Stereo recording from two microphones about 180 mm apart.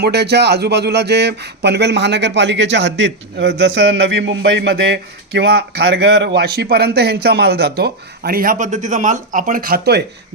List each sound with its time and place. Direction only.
0.0 s speech: 65° right (ahead or behind)